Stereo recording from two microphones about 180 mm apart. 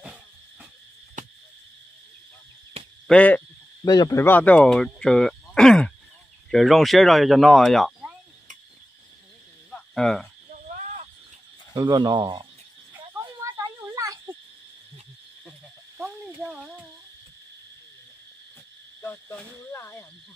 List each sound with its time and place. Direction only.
0.0 s owl: 5° right (ahead or behind)
1.2 s cricket: 45° right (ahead or behind)
2.8 s cricket: 35° right (ahead or behind)
3.1 s owl: 10° left (ahead or behind)
3.8 s speech: 20° left (ahead or behind); by 8.1 s centre (ahead or behind)
9.7 s cricket: 5° left (ahead or behind)
11.7 s speech: 25° right (ahead or behind)
12.9 s a sound: 10° right (ahead or behind)
16.0 s a sound: 5° right (ahead or behind)
18.9 s cricket: 15° left (ahead or behind)